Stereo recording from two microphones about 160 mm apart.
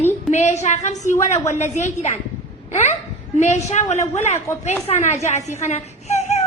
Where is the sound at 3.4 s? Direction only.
45° left (ahead or behind).